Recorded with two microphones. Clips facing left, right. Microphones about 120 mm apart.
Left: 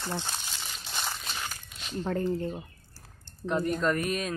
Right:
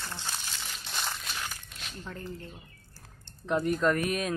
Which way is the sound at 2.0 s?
55° left (ahead or behind).